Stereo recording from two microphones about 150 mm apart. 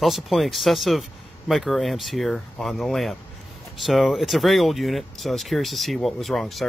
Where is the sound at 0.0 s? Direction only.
Centre (ahead or behind).